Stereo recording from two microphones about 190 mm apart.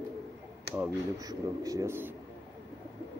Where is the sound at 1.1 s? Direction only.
20° right (ahead or behind).